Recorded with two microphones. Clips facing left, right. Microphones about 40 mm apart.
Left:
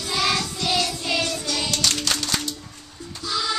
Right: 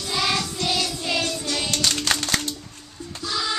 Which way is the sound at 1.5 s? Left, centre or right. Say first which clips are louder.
Even; centre.